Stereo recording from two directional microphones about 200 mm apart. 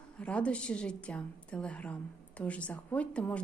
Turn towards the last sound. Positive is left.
turn(degrees=5)  # may be behind; listen again after turning